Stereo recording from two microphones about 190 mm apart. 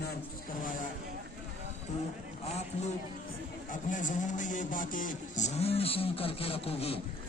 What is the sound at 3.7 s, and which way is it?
A man's voice, 40° left (ahead or behind).